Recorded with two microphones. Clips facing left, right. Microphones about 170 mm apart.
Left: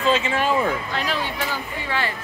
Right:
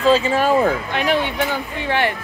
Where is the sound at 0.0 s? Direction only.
35° right (ahead or behind).